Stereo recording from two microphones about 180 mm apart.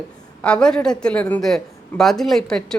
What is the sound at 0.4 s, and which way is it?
Speech, 5° left (ahead or behind).